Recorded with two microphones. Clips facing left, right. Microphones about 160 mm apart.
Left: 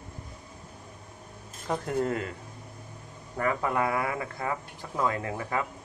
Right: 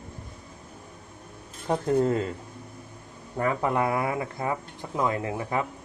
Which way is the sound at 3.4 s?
20° right (ahead or behind).